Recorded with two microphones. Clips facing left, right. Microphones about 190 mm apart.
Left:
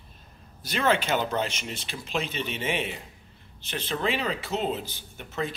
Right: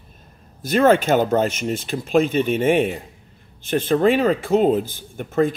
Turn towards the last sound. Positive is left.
turn(degrees=-50)  # may be behind; listen again after turning